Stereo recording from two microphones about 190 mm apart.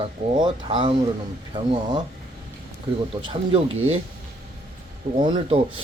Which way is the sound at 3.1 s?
30° right (ahead or behind).